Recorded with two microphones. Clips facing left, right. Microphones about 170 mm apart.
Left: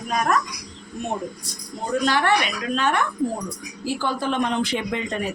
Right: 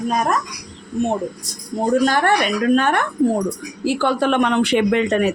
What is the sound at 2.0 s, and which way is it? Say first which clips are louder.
A woman's voice: right 4 dB; 45° right (ahead or behind).